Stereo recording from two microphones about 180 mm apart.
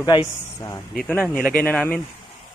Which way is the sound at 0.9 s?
5° left (ahead or behind).